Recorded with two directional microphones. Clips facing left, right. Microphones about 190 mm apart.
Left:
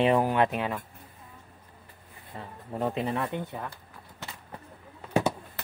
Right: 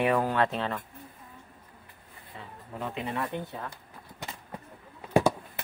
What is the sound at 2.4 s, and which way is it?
Speech, 35° left (ahead or behind).